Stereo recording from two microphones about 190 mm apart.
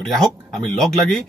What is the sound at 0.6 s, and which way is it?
Speech, centre (ahead or behind).